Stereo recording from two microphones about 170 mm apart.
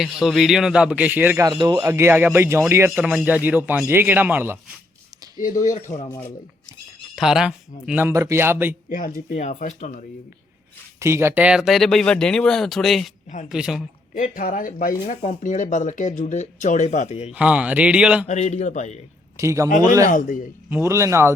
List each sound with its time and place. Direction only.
0.0 s speech: centre (ahead or behind)
1.5 s speech: 20° right (ahead or behind)
5.4 s speech: 50° left (ahead or behind)
7.2 s speech: 5° right (ahead or behind)
8.9 s speech: 55° left (ahead or behind)
11.0 s speech: 15° right (ahead or behind)
14.2 s speech: 50° left (ahead or behind)
17.3 s speech: 5° right (ahead or behind)
18.3 s a man's voice: 40° left (ahead or behind)
19.4 s speech: 20° right (ahead or behind)
20.1 s speech: 55° left (ahead or behind)
20.7 s speech: 15° right (ahead or behind)